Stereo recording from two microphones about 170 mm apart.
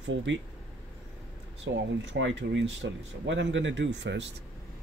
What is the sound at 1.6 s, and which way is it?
Speech, 90° right.